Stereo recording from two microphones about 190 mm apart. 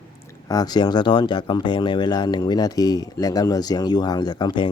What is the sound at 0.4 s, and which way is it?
Speech, 20° left (ahead or behind).